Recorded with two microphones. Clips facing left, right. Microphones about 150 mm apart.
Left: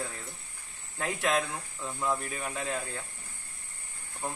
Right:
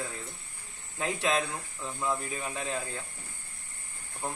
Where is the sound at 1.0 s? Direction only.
20° right (ahead or behind).